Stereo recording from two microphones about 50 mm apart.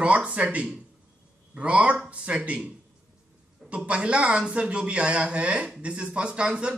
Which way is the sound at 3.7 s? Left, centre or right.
Right.